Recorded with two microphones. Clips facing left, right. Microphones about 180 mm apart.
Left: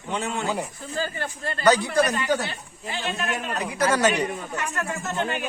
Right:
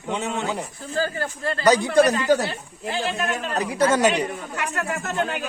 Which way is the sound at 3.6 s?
30° right (ahead or behind).